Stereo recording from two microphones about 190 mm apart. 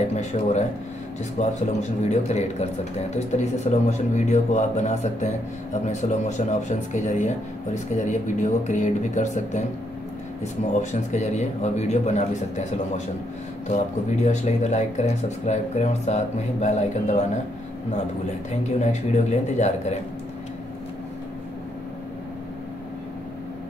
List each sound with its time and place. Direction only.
0.1 s a man's voice: 35° left (ahead or behind)
14.2 s a man's voice: 35° left (ahead or behind)
18.5 s a man's voice: 35° left (ahead or behind)